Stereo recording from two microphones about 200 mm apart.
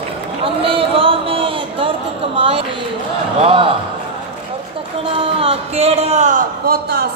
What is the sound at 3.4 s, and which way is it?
Speech, 25° right (ahead or behind).